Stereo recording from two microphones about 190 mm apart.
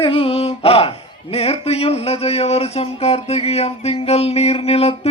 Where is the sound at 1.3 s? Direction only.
30° left (ahead or behind).